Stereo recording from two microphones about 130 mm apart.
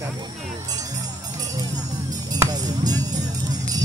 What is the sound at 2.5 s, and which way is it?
Music, 30° right (ahead or behind).